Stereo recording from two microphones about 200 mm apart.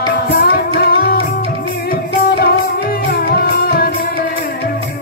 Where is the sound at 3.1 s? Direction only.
50° left (ahead or behind).